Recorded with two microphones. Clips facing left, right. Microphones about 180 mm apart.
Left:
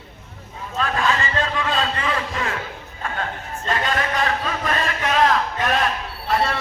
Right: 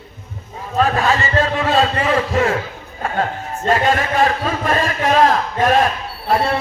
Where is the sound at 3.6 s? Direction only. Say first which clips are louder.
Right 7 dB; 45° right (ahead or behind).